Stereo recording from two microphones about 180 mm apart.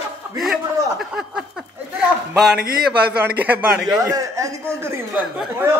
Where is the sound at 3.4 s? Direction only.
10° right (ahead or behind).